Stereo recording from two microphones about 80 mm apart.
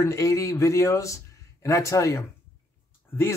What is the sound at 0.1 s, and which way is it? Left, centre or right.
Speech, left.